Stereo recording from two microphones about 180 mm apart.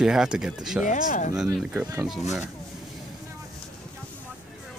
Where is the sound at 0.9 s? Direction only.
45° left (ahead or behind).